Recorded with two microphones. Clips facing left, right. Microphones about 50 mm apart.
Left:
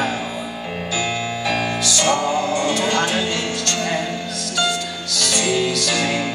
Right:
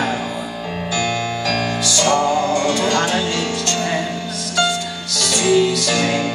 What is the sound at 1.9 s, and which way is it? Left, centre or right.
Music, centre.